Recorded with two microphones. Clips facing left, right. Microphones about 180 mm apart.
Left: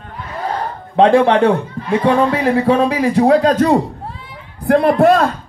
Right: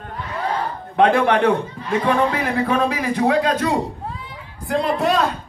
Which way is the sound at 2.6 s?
30° left (ahead or behind).